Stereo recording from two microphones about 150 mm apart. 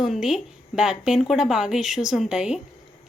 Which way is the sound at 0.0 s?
5° right (ahead or behind).